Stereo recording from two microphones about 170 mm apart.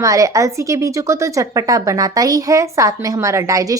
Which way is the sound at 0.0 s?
20° right (ahead or behind).